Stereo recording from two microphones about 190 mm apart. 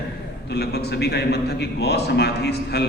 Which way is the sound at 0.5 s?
60° left (ahead or behind).